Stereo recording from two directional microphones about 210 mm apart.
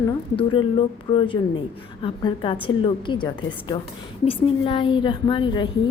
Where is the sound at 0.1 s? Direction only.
25° left (ahead or behind).